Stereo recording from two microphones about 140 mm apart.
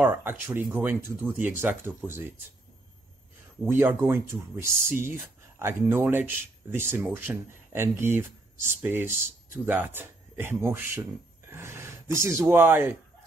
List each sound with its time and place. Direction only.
0.0 s speech: 15° right (ahead or behind)
3.6 s speech: 20° right (ahead or behind)